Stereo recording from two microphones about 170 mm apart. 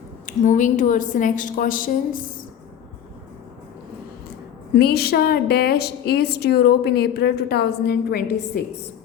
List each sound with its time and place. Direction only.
0.3 s a woman's voice: 50° left (ahead or behind)
4.7 s a woman's voice: 70° left (ahead or behind)